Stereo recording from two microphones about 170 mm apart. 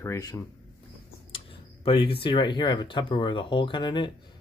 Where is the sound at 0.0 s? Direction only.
20° left (ahead or behind).